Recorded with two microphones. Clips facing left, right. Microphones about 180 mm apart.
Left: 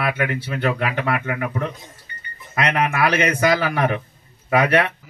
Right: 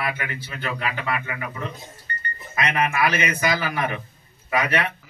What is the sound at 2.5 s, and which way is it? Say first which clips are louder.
A man's voice: left 3 dB; 65° left (ahead or behind).